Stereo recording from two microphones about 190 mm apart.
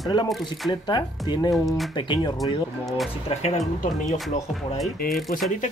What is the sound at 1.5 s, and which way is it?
Speech, centre (ahead or behind).